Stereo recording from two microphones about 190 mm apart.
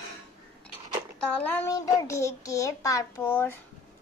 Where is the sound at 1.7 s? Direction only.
20° left (ahead or behind).